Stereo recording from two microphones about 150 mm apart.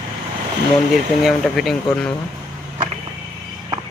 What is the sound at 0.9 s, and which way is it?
Speech, centre (ahead or behind).